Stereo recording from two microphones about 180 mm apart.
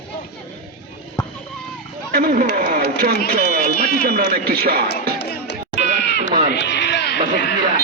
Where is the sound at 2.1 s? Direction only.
55° right (ahead or behind).